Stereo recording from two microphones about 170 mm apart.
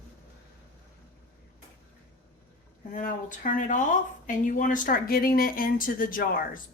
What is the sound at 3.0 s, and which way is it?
A woman's voice, 55° left (ahead or behind).